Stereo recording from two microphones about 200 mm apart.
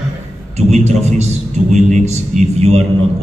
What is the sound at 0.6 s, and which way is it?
A man's voice, 35° right (ahead or behind).